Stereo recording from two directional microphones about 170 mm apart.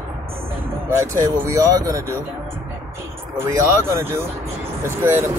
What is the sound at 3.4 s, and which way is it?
Speech, 15° right (ahead or behind).